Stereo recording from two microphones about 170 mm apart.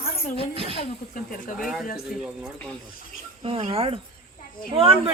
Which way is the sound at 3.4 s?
35° right (ahead or behind).